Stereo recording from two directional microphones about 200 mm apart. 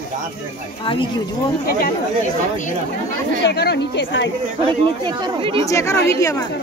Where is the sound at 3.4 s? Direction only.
55° left (ahead or behind).